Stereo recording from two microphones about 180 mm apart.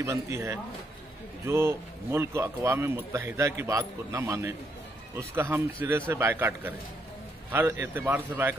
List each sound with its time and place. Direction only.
0.0 s speech: 15° right (ahead or behind)